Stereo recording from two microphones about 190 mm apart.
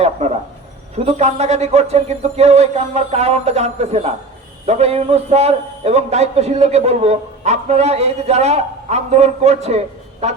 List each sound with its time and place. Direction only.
0.2 s a man's voice: 35° right (ahead or behind)